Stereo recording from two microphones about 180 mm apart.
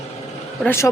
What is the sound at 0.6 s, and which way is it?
Speech, 15° left (ahead or behind).